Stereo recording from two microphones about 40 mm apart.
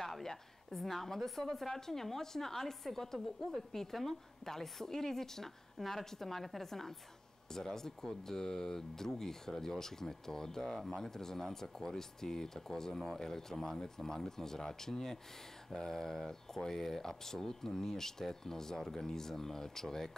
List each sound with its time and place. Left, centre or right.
0.0 s a woman's voice: centre